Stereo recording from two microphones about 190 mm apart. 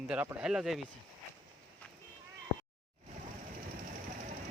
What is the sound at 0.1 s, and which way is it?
Speech, 5° right (ahead or behind).